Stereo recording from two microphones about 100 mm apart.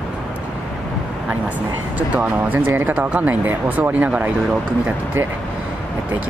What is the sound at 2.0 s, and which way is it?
Speech, 15° right (ahead or behind).